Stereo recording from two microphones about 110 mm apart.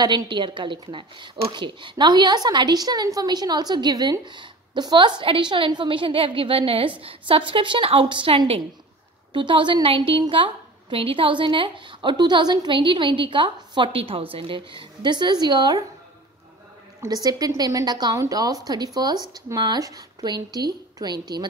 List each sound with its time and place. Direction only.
0.0 s a woman's voice: 45° right (ahead or behind)
17.0 s a woman's voice: 35° right (ahead or behind)